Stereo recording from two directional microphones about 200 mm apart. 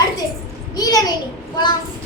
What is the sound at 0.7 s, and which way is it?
Speech, 20° left (ahead or behind).